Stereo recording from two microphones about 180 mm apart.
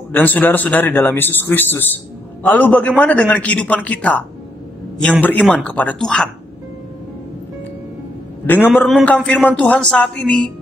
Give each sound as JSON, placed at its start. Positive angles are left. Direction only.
{"t": 0.1, "sound": "a man's voice", "side_deg": 10}
{"t": 8.5, "sound": "a man's voice", "side_deg": 10}